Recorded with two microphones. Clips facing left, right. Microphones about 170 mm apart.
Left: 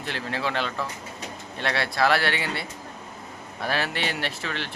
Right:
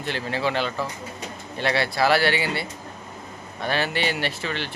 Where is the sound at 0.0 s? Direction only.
Centre (ahead or behind).